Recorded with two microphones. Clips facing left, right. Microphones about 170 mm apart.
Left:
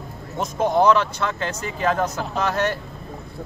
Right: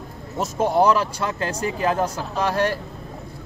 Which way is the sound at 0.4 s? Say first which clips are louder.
Even; 10° right (ahead or behind).